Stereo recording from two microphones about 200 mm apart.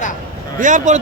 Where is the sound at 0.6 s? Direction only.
40° right (ahead or behind).